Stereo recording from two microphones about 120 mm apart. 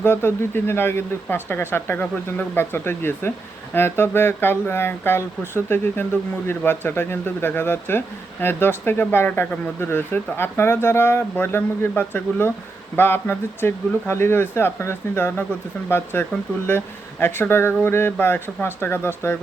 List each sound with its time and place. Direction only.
0.0 s speech: 20° left (ahead or behind)